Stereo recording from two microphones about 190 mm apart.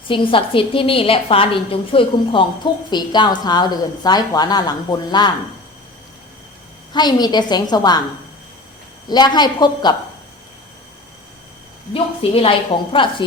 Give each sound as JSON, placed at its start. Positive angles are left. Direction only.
{"t": 0.1, "sound": "a woman's voice", "side_deg": 25}
{"t": 6.9, "sound": "a woman's voice", "side_deg": 20}
{"t": 9.0, "sound": "a woman's voice", "side_deg": 20}
{"t": 12.2, "sound": "a woman's voice", "side_deg": 30}